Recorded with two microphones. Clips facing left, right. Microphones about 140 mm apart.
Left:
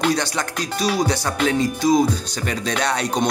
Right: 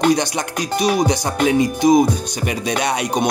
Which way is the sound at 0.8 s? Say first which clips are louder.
Right 3 dB; 15° right (ahead or behind).